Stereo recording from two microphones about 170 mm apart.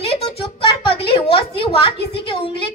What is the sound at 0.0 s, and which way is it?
Music, 35° left (ahead or behind).